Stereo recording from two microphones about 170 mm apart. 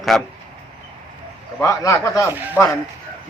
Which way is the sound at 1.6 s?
20° left (ahead or behind).